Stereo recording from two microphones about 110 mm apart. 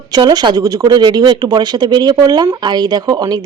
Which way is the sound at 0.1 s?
40° right (ahead or behind).